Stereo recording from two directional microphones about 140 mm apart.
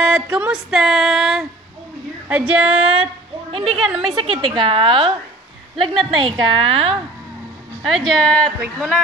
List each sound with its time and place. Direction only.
0.0 s music: 10° right (ahead or behind)
2.2 s speech: 10° right (ahead or behind)
3.6 s music: centre (ahead or behind)
4.1 s a woman's voice: 40° right (ahead or behind)
7.9 s music: centre (ahead or behind)